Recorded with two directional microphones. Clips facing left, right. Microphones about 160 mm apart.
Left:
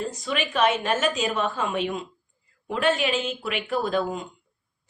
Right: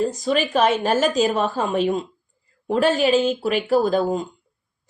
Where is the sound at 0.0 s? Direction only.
35° right (ahead or behind).